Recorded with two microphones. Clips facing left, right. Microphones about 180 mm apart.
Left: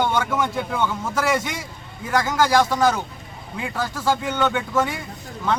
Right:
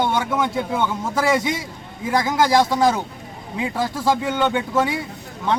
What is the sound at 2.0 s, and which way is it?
A man's voice, 25° right (ahead or behind).